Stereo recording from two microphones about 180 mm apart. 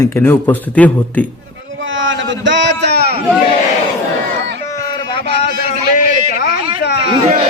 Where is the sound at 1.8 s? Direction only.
90° right; by 3.2 s 65° right (ahead or behind).